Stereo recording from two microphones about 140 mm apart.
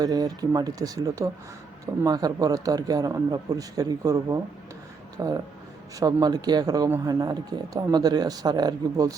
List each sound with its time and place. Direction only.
0.0 s a man's voice: 25° right (ahead or behind)